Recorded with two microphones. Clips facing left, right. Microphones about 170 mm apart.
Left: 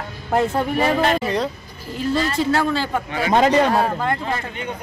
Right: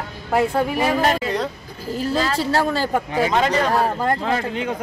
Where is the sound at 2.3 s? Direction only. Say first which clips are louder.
Left 1 dB; 40° right (ahead or behind).